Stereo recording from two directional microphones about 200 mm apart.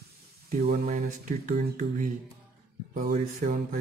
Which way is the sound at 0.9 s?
40° right (ahead or behind).